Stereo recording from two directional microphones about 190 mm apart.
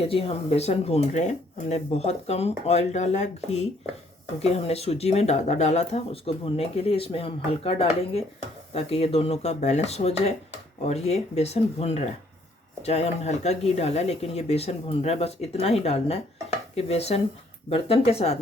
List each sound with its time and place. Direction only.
0.0 s speech: 30° left (ahead or behind)